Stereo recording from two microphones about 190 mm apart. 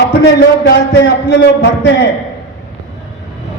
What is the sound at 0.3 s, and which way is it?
A man's voice, 65° left (ahead or behind).